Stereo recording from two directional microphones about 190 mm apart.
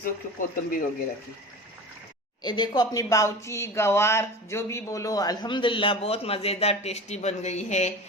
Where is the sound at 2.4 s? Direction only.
25° left (ahead or behind).